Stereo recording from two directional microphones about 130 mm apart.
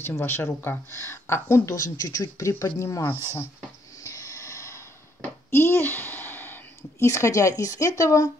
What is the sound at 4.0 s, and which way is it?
Snort, 25° left (ahead or behind).